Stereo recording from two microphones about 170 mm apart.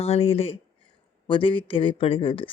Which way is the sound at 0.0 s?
35° left (ahead or behind).